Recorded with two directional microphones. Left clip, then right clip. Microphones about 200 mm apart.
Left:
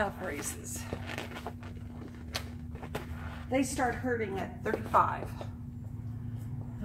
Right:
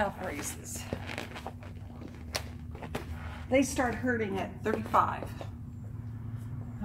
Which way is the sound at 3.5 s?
30° right (ahead or behind).